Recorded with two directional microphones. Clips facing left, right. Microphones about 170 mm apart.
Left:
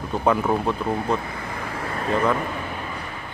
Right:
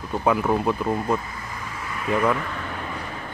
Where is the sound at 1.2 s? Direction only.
60° left (ahead or behind).